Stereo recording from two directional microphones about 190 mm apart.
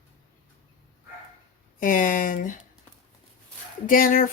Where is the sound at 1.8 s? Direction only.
45° left (ahead or behind).